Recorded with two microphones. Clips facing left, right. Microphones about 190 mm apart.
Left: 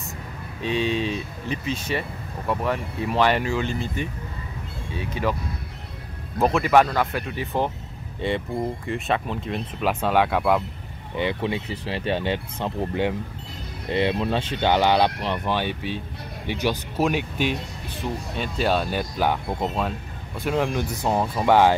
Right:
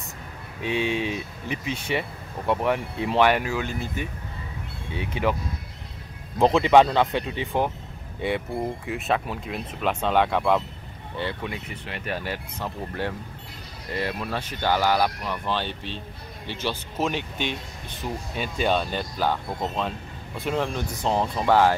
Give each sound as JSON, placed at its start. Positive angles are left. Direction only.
{"t": 0.6, "sound": "speech", "side_deg": -15}
{"t": 6.4, "sound": "speech", "side_deg": -25}
{"t": 8.8, "sound": "speech", "side_deg": 0}
{"t": 11.1, "sound": "speech", "side_deg": 20}
{"t": 15.4, "sound": "speech", "side_deg": 15}